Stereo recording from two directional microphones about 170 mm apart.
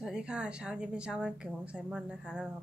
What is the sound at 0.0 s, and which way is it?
A woman's voice, 5° right (ahead or behind).